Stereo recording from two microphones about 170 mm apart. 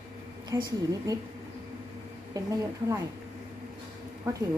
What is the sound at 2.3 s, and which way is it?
Speech, 20° right (ahead or behind).